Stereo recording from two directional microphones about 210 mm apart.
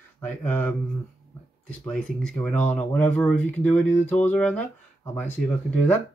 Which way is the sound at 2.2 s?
5° left (ahead or behind).